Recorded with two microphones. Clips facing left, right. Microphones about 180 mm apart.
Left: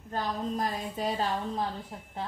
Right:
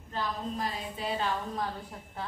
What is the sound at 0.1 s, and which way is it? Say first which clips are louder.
A woman's voice: left 3 dB; 45° left (ahead or behind).